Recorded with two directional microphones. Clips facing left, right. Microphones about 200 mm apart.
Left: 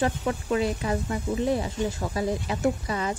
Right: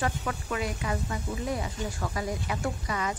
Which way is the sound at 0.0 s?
25° left (ahead or behind).